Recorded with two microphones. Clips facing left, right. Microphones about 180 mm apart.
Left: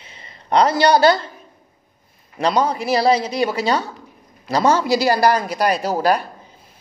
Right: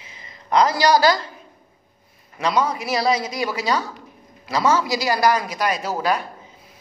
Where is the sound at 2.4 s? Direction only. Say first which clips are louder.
Left 3 dB; 30° left (ahead or behind).